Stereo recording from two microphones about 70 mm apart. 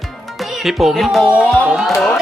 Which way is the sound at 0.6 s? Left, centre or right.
Centre.